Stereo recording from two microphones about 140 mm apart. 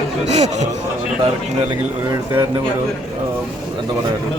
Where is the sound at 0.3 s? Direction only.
50° right (ahead or behind).